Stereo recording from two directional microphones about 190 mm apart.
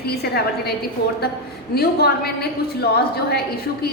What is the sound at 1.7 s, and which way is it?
Speech, 55° left (ahead or behind).